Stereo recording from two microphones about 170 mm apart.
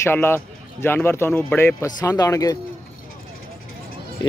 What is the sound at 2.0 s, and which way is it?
Speech, 20° left (ahead or behind).